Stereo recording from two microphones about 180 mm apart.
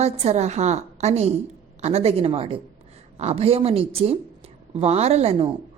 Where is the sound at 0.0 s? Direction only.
35° right (ahead or behind).